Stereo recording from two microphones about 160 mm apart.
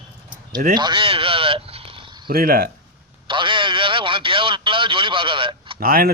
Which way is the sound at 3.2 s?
30° right (ahead or behind).